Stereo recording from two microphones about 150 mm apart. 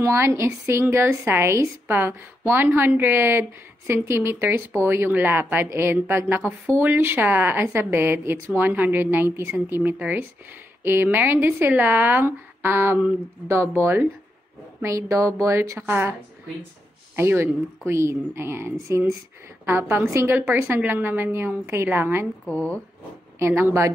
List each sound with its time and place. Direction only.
0.0 s a woman's voice: 20° right (ahead or behind)
22.5 s speech: 10° left (ahead or behind)
23.4 s a woman's voice: 15° right (ahead or behind)